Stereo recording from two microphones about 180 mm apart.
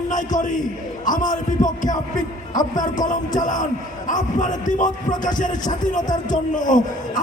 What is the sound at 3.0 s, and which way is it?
Speech, 45° left (ahead or behind).